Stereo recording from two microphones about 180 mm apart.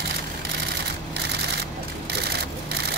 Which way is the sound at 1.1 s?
65° right (ahead or behind).